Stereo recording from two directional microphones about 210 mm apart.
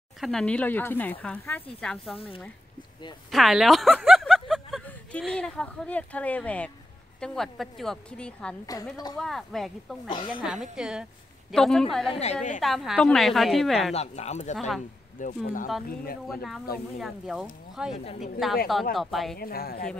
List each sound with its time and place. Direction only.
0.2 s speech: centre (ahead or behind)
3.3 s a woman's voice: centre (ahead or behind)
8.9 s speech: 20° left (ahead or behind)
9.2 s a woman's voice: centre (ahead or behind)
10.0 s speech: 25° left (ahead or behind)
10.4 s a woman's voice: centre (ahead or behind)
12.1 s speech: 30° left (ahead or behind)
12.5 s a woman's voice: centre (ahead or behind)
13.9 s speech: 30° left (ahead or behind)
17.0 s a woman's voice: centre (ahead or behind)
19.3 s speech: 45° left (ahead or behind)